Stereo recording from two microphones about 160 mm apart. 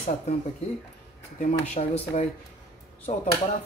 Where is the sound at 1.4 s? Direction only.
45° left (ahead or behind).